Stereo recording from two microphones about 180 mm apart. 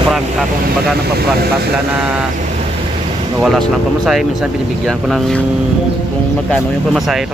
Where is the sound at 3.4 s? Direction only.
Centre (ahead or behind).